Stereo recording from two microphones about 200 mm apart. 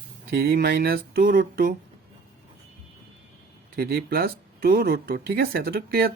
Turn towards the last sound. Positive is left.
turn(degrees=-50)  # may be behind; listen again after turning